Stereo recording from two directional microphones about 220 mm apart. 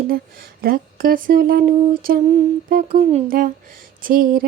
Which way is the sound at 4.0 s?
40° right (ahead or behind).